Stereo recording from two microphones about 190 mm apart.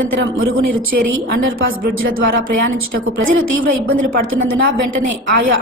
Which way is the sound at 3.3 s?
90° right.